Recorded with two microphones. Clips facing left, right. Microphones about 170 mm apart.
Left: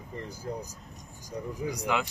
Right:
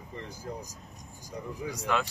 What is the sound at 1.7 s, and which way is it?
Speech, 15° left (ahead or behind).